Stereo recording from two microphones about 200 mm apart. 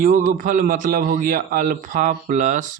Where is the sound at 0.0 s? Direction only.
40° right (ahead or behind).